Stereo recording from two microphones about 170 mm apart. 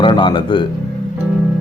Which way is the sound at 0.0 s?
30° left (ahead or behind).